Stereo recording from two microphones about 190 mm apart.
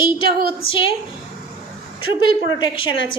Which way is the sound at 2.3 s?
25° left (ahead or behind).